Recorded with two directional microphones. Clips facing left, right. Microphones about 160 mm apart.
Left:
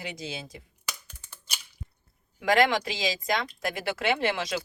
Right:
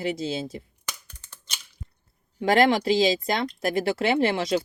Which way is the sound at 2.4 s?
30° right (ahead or behind).